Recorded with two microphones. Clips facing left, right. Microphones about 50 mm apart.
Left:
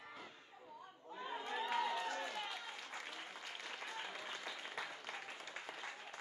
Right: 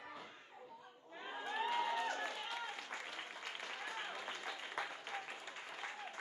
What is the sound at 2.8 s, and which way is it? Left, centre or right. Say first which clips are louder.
Applause: right 2 dB; centre.